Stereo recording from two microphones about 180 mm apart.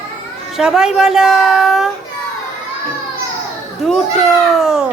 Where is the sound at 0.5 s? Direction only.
5° right (ahead or behind).